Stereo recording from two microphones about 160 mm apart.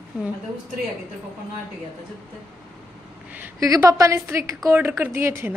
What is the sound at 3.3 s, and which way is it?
A man's voice, 15° right (ahead or behind).